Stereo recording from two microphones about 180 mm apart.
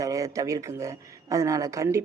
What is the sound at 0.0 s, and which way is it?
Speech, 20° right (ahead or behind).